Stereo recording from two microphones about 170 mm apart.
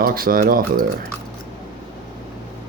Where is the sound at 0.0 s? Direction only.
60° right (ahead or behind).